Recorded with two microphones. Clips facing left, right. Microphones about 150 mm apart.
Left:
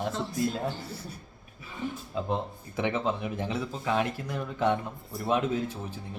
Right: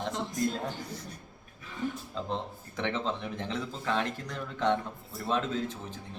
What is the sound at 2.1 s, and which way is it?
Speech, 10° left (ahead or behind).